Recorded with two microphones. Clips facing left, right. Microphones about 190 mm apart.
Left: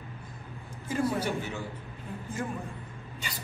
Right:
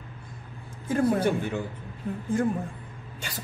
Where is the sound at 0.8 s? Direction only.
55° right (ahead or behind).